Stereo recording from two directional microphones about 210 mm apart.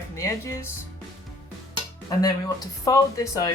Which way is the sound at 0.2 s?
15° left (ahead or behind).